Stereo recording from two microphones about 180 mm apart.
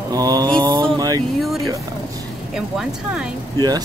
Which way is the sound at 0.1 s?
20° right (ahead or behind).